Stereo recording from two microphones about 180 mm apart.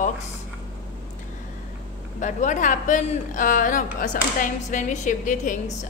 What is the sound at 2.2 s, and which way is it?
Speech, 40° left (ahead or behind).